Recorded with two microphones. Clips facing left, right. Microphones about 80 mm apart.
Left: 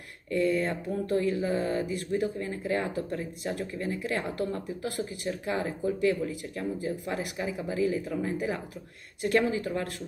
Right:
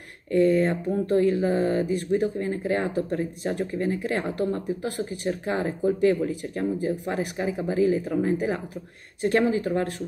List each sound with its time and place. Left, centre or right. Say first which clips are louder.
0.3 s speech: right 6 dB; right